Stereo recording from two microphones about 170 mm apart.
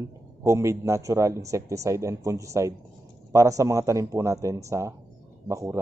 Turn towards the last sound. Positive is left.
turn(degrees=-20)  # may be behind; listen again after turning